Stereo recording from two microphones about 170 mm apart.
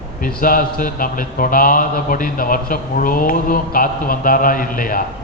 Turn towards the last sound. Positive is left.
turn(degrees=55)  # may be behind; listen again after turning